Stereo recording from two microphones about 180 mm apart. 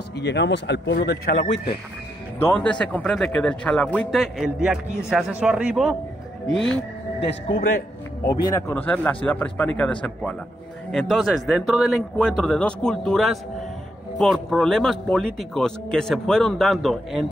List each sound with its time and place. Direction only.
0.1 s speech: 75° left (ahead or behind)
2.3 s speech: 10° left (ahead or behind)
7.2 s speech: 70° left (ahead or behind)
8.5 s a man's voice: 10° left (ahead or behind)